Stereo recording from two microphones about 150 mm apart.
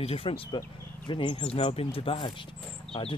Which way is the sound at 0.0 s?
40° left (ahead or behind).